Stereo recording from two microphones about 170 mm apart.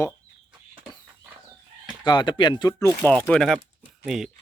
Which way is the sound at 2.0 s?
25° left (ahead or behind).